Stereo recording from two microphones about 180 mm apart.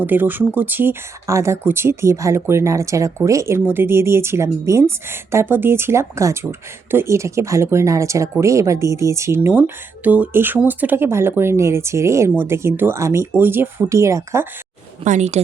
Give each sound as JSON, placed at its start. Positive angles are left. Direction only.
{"t": 0.0, "sound": "speech", "side_deg": -10}
{"t": 15.0, "sound": "speech", "side_deg": -40}